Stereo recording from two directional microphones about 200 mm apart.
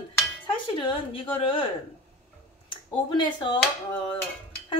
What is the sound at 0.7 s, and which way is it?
Speech, 25° left (ahead or behind).